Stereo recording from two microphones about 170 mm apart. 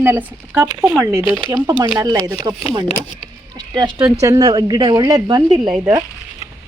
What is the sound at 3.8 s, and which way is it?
Speech, 30° right (ahead or behind).